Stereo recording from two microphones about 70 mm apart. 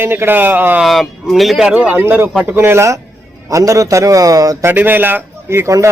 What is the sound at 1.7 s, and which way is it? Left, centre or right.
Speech, centre.